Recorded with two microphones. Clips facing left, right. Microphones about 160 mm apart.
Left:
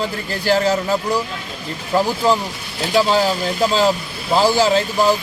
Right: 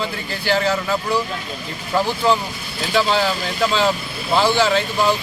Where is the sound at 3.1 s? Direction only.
40° left (ahead or behind).